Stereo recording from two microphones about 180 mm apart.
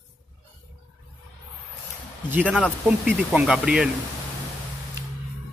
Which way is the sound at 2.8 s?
5° right (ahead or behind).